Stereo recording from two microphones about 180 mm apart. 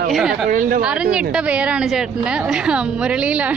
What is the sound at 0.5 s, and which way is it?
Speech, 50° right (ahead or behind).